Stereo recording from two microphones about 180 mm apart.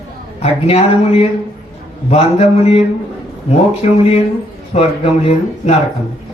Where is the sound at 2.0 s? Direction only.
35° left (ahead or behind).